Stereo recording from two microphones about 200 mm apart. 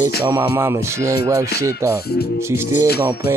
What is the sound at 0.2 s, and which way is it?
Music, 10° right (ahead or behind).